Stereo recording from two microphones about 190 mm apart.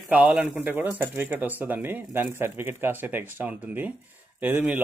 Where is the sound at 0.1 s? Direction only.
5° right (ahead or behind).